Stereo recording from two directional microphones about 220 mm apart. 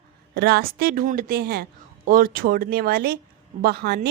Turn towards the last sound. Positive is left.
turn(degrees=-45)  # may be behind; listen again after turning